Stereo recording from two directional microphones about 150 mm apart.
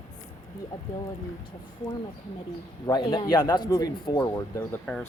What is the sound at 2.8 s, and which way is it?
A man's voice, 30° left (ahead or behind).